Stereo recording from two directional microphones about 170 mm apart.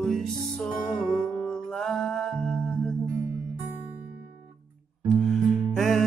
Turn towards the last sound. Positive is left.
turn(degrees=0)  # may be behind; listen again after turning